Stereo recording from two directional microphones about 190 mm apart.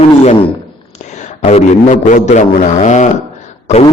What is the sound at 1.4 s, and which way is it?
A man's voice, 35° left (ahead or behind).